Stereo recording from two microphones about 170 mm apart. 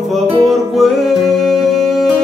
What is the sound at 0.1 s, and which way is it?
Music, centre (ahead or behind).